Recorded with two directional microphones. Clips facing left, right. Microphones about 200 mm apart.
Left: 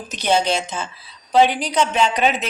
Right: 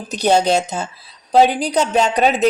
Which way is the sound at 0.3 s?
40° right (ahead or behind).